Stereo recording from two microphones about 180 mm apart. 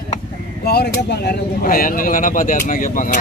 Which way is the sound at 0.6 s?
65° left (ahead or behind).